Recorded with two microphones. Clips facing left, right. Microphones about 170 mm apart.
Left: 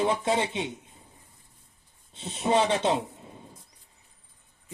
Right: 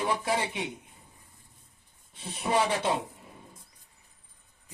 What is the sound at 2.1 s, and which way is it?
Speech, 25° left (ahead or behind).